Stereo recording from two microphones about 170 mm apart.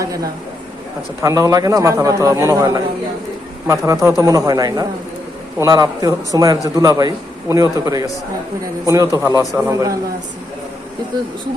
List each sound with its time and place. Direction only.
0.0 s a man's voice: 20° right (ahead or behind)